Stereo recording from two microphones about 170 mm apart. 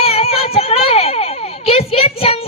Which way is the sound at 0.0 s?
35° left (ahead or behind).